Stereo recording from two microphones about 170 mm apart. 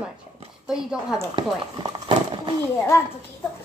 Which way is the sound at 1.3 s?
30° right (ahead or behind).